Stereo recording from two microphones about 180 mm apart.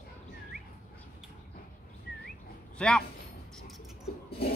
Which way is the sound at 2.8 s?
5° left (ahead or behind).